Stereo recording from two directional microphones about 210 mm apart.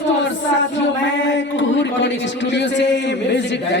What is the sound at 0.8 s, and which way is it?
A man's voice, 60° left (ahead or behind).